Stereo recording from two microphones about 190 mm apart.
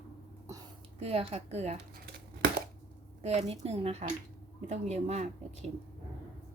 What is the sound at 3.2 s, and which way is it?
Speech, 35° right (ahead or behind).